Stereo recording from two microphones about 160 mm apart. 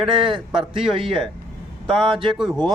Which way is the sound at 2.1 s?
30° right (ahead or behind).